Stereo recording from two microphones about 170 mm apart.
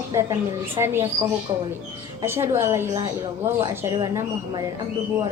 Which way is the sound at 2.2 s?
15° right (ahead or behind).